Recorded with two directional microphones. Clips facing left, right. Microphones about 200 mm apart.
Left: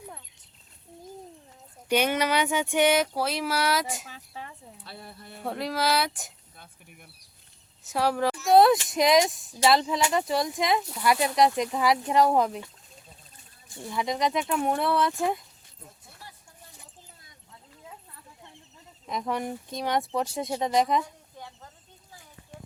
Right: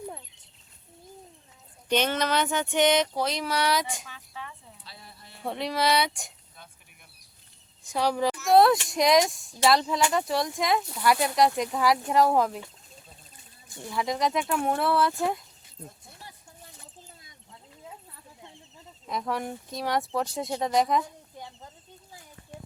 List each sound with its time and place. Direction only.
1.9 s speech: 10° left (ahead or behind)
4.0 s a sound: 40° left (ahead or behind)
4.8 s speech: 55° left (ahead or behind)
5.4 s speech: centre (ahead or behind)
7.9 s speech: 5° left (ahead or behind)
13.9 s speech: centre (ahead or behind)
19.0 s speech: centre (ahead or behind)
21.3 s a sound: 15° right (ahead or behind)